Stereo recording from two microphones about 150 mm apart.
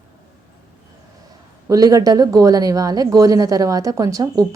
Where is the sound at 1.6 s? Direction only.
25° right (ahead or behind).